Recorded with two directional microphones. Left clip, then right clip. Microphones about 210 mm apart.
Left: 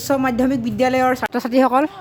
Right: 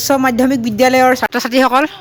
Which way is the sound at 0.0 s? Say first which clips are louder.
Right 6 dB; 30° right (ahead or behind).